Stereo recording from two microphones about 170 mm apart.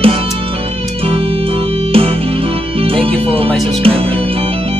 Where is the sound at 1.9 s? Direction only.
35° right (ahead or behind).